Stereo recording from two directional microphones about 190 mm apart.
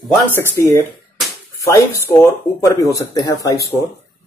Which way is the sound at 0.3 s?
10° left (ahead or behind).